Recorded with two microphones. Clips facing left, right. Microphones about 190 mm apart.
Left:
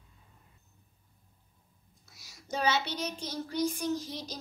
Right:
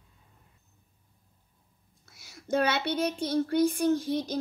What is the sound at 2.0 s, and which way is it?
Speech, 55° right (ahead or behind).